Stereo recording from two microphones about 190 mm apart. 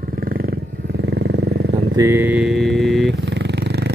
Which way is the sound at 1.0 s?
65° right (ahead or behind).